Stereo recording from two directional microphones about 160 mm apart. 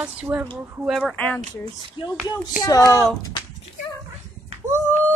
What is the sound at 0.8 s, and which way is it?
Speech, centre (ahead or behind).